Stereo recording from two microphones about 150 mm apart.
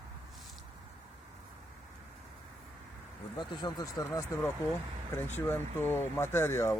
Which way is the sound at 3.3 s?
25° left (ahead or behind).